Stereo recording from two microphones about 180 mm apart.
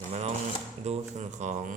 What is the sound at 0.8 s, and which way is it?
Speech, 40° right (ahead or behind).